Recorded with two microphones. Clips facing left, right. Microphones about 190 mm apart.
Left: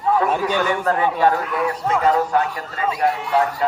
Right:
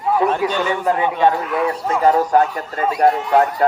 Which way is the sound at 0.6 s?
15° right (ahead or behind).